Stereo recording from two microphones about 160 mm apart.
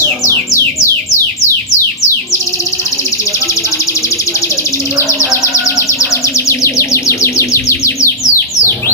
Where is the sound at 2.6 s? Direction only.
20° left (ahead or behind).